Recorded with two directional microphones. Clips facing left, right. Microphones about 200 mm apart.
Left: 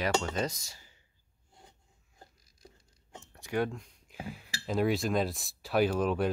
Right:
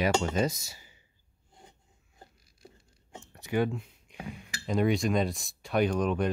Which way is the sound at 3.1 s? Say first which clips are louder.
Right 3 dB; centre (ahead or behind).